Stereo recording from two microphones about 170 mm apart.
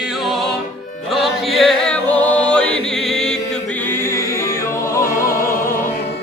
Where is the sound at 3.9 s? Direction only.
15° left (ahead or behind).